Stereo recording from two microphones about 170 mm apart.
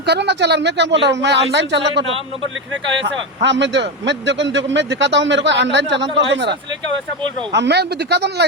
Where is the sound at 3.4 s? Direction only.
90° right.